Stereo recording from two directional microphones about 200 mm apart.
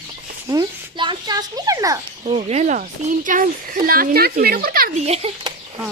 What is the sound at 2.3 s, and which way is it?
Speech, 30° right (ahead or behind).